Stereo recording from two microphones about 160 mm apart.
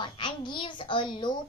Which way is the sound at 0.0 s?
30° left (ahead or behind).